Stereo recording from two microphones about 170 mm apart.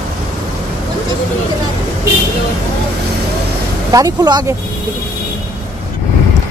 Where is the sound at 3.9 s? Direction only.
20° right (ahead or behind).